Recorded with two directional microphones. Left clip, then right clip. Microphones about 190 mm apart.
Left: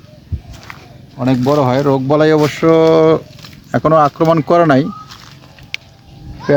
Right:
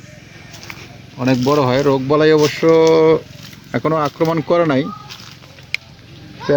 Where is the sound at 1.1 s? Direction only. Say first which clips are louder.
Left 1 dB; 35° left (ahead or behind).